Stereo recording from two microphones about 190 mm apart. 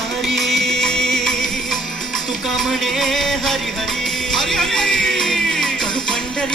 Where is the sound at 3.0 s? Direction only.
Centre (ahead or behind).